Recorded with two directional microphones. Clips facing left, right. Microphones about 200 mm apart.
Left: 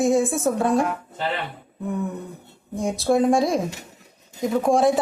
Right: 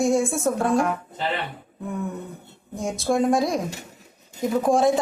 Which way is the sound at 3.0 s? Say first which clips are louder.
Left 2 dB; centre (ahead or behind).